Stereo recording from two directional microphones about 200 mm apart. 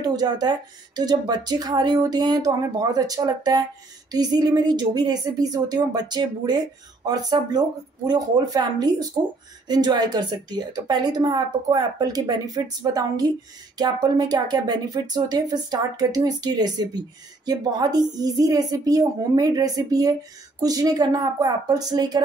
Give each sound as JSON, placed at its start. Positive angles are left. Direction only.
{"t": 0.0, "sound": "speech", "side_deg": -20}